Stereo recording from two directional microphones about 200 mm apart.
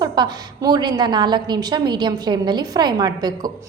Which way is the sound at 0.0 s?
20° right (ahead or behind).